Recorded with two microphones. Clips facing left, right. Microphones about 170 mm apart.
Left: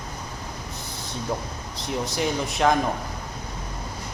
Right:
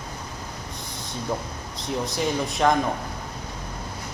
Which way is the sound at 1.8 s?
Centre (ahead or behind).